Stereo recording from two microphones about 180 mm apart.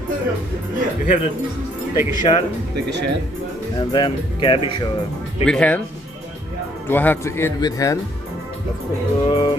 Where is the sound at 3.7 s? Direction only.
25° left (ahead or behind).